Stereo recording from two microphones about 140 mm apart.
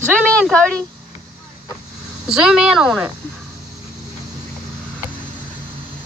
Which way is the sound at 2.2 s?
5° right (ahead or behind).